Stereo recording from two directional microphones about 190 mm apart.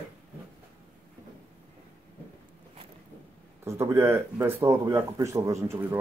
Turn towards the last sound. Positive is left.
turn(degrees=-15)  # may be behind; listen again after turning